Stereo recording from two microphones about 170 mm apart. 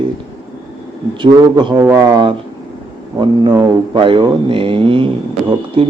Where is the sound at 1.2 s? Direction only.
25° right (ahead or behind).